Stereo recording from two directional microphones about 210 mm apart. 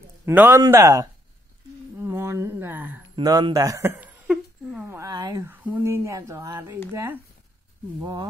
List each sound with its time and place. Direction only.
0.2 s speech: 10° right (ahead or behind)
2.0 s a sound: 10° right (ahead or behind)
3.2 s speech: 20° right (ahead or behind)